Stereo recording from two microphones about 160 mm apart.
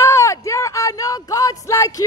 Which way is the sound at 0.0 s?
20° left (ahead or behind).